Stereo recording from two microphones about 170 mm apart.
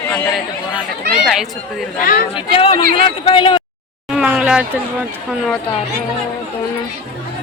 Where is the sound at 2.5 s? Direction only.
35° left (ahead or behind).